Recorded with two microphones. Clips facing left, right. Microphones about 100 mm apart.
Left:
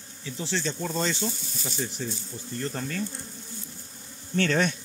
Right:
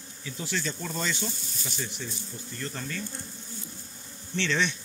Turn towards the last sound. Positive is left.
turn(degrees=45)  # may be behind; listen again after turning